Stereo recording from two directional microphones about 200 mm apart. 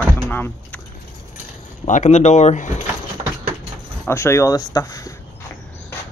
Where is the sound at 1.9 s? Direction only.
35° left (ahead or behind).